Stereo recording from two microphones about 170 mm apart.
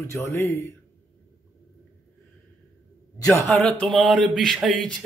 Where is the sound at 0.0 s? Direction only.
15° left (ahead or behind).